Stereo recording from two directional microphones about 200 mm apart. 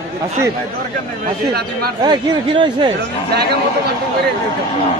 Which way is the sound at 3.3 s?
55° right (ahead or behind).